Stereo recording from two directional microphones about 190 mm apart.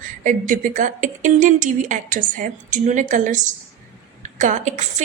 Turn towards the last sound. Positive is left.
turn(degrees=-35)  # may be behind; listen again after turning